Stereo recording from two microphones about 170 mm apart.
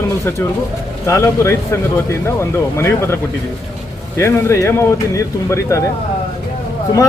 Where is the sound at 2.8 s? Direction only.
15° left (ahead or behind).